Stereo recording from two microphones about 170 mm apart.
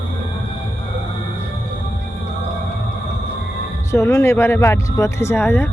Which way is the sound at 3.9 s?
15° left (ahead or behind).